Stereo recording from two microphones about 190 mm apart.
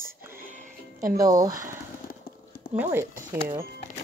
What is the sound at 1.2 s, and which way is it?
Speech, 20° right (ahead or behind).